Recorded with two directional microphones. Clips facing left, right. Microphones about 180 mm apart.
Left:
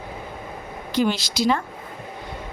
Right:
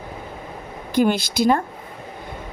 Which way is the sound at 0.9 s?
55° right (ahead or behind).